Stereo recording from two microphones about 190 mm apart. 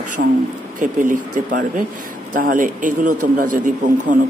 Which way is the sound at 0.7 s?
45° right (ahead or behind).